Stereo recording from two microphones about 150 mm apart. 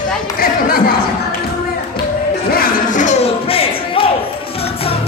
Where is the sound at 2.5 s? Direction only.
65° left (ahead or behind); by 4.0 s 40° left (ahead or behind).